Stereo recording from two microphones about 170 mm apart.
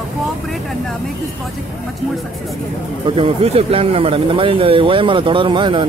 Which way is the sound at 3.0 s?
30° right (ahead or behind).